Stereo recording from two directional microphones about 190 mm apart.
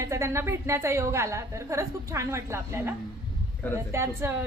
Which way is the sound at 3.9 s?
15° right (ahead or behind).